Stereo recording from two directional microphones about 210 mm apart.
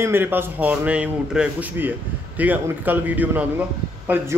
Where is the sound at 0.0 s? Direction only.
10° right (ahead or behind).